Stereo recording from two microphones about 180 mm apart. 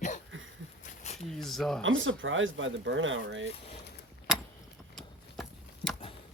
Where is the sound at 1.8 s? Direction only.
90° right.